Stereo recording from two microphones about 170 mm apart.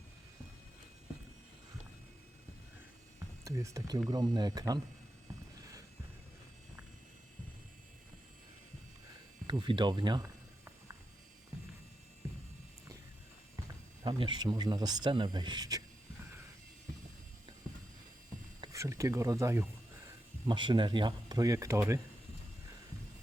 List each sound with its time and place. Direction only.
3.4 s speech: 20° right (ahead or behind)
9.5 s speech: 30° right (ahead or behind)
13.7 s speech: 20° right (ahead or behind)
18.6 s speech: 20° right (ahead or behind)
20.1 s speech: 25° right (ahead or behind)